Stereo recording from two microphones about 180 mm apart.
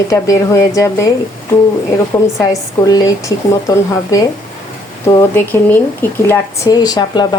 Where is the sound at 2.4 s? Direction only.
20° left (ahead or behind).